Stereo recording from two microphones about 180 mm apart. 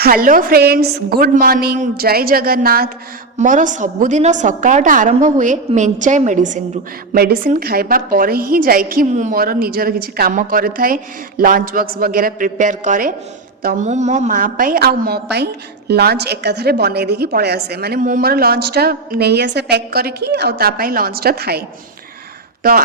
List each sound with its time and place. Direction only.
0.0 s a woman's voice: 55° right (ahead or behind)
3.3 s a woman's voice: 45° right (ahead or behind)
7.1 s a woman's voice: 55° right (ahead or behind)